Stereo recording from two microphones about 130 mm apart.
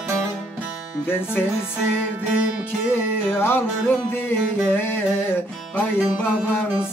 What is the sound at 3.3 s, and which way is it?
Music, 15° left (ahead or behind).